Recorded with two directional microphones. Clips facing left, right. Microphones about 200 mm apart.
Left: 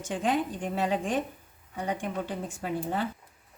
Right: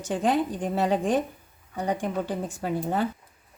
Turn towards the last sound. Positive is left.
turn(degrees=-40)  # may be behind; listen again after turning